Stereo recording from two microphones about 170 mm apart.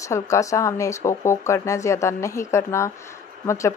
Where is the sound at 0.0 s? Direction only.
20° left (ahead or behind).